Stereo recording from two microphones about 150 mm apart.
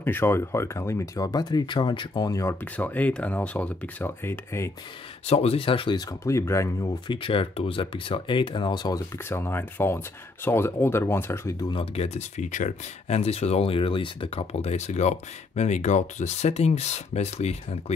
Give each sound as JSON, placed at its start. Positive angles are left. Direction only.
{"t": 0.0, "sound": "speech", "side_deg": 15}
{"t": 2.6, "sound": "speech", "side_deg": 10}
{"t": 5.2, "sound": "speech", "side_deg": 45}
{"t": 6.2, "sound": "speech", "side_deg": 20}
{"t": 7.1, "sound": "speech", "side_deg": 35}
{"t": 11.7, "sound": "speech", "side_deg": 40}